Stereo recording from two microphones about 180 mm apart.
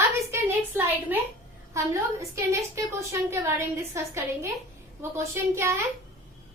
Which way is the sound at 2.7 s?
15° right (ahead or behind).